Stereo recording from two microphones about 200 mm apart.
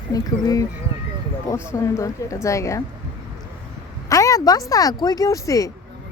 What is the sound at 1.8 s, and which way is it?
A woman's voice, 15° left (ahead or behind).